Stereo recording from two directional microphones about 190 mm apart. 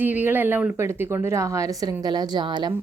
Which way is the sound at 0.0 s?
10° right (ahead or behind).